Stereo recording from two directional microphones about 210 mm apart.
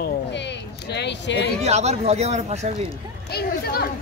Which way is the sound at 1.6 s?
30° right (ahead or behind).